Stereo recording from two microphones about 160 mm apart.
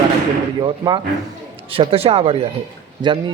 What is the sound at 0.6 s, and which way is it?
Speech, 30° right (ahead or behind).